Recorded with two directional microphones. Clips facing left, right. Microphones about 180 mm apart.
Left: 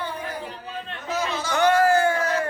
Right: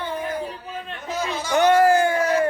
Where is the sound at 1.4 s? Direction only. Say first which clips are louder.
Right 3 dB; 15° right (ahead or behind).